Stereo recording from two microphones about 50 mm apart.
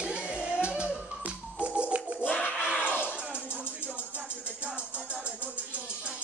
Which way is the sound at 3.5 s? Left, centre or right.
Right.